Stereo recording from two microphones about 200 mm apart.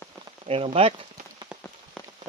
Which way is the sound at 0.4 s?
30° right (ahead or behind).